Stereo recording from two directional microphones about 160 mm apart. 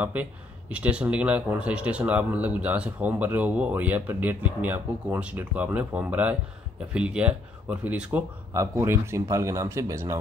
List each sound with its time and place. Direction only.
0.0 s speech: 10° right (ahead or behind)